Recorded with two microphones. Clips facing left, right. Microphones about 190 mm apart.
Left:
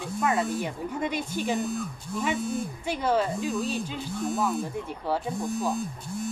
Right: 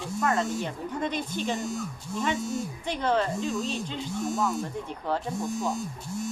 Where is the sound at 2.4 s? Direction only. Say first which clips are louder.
Left 1 dB; 55° left (ahead or behind).